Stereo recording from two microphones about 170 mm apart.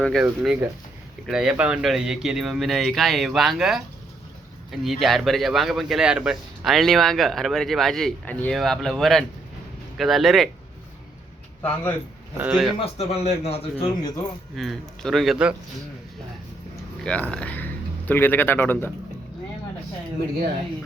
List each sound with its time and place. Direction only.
0.0 s speech: centre (ahead or behind)
11.6 s speech: 10° left (ahead or behind)
12.4 s speech: 5° right (ahead or behind)
12.8 s a man's voice: 35° left (ahead or behind)
14.5 s speech: centre (ahead or behind)
17.0 s speech: 5° left (ahead or behind)